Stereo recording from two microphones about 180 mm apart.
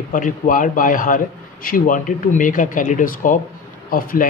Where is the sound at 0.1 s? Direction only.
45° left (ahead or behind).